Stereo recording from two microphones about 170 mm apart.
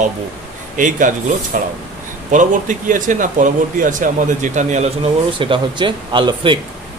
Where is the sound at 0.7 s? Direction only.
50° right (ahead or behind).